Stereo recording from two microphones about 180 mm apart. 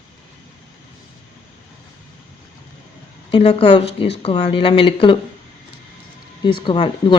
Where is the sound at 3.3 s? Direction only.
30° left (ahead or behind).